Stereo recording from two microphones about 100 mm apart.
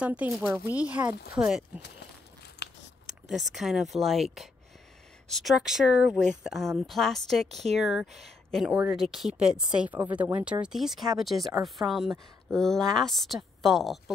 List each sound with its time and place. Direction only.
0.0 s speech: 10° right (ahead or behind)
3.1 s speech: centre (ahead or behind)
9.8 s speech: 20° right (ahead or behind); by 14.1 s centre (ahead or behind)